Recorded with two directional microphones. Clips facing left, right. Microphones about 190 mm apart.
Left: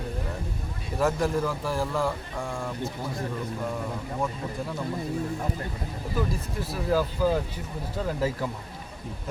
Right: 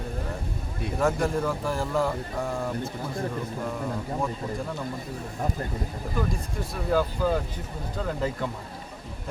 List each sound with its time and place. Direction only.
0.9 s speech: centre (ahead or behind)
6.1 s speech: 5° left (ahead or behind)